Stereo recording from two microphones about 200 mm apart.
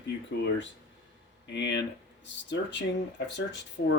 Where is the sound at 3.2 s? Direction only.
65° left (ahead or behind).